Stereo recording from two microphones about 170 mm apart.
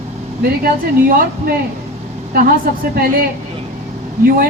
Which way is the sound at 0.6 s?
60° right (ahead or behind).